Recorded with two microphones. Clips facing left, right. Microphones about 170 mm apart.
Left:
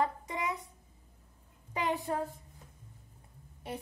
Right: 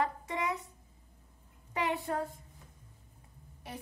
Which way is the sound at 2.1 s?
20° left (ahead or behind).